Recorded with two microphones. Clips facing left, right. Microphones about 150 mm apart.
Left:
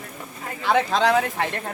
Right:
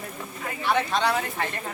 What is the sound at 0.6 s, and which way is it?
Speech, 90° left.